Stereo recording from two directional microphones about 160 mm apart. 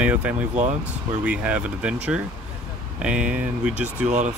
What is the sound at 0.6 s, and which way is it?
Speech, 45° right (ahead or behind).